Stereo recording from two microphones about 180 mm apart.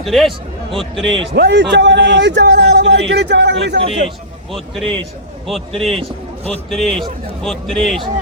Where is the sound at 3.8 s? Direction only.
30° right (ahead or behind).